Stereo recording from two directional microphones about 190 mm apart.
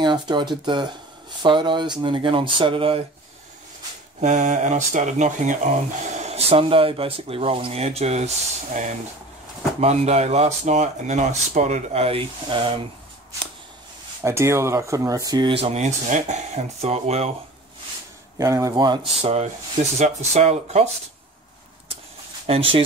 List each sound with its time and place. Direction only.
0.0 s speech: 25° right (ahead or behind)
4.2 s speech: 40° right (ahead or behind)
9.8 s speech: 35° right (ahead or behind)
14.2 s speech: 15° right (ahead or behind); by 17.3 s 35° right (ahead or behind)
18.4 s speech: 15° right (ahead or behind); by 20.9 s 35° right (ahead or behind)
22.5 s speech: 30° right (ahead or behind)